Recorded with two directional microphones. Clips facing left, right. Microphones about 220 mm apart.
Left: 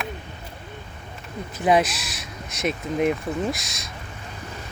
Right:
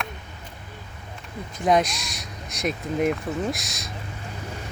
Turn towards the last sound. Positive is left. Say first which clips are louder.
# left 1 dB
turn(degrees=0)  # may be behind; listen again after turning